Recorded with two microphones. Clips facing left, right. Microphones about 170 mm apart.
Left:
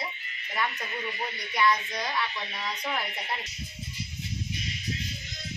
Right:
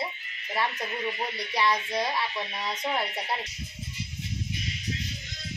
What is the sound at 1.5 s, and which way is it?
Speech, 30° right (ahead or behind).